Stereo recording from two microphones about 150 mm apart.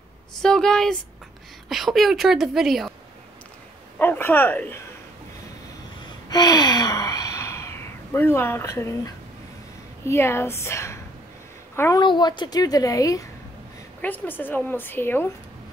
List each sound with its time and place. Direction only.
0.4 s a woman's voice: 5° left (ahead or behind)
4.0 s speech: 15° left (ahead or behind)
6.2 s sigh: 25° left (ahead or behind)
10.0 s a woman's voice: 15° left (ahead or behind)
12.0 s a woman's voice: 30° left (ahead or behind)
14.0 s a woman's voice: 10° left (ahead or behind)